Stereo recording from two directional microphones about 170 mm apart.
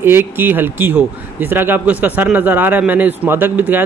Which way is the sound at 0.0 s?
10° right (ahead or behind).